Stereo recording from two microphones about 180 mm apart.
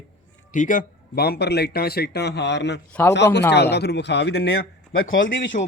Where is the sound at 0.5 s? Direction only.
45° left (ahead or behind); by 4.6 s 65° left (ahead or behind).